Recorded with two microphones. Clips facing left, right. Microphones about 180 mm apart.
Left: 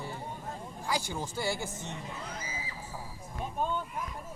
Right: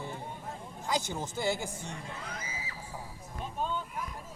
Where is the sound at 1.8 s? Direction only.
25° left (ahead or behind).